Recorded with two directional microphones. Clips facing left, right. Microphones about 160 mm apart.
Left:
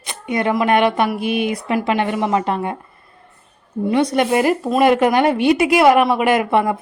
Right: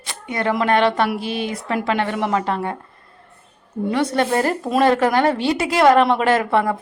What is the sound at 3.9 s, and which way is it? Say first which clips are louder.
A woman's voice: left 3 dB; 15° left (ahead or behind).